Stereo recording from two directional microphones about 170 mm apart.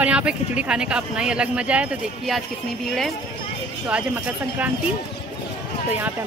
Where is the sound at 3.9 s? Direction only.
10° right (ahead or behind).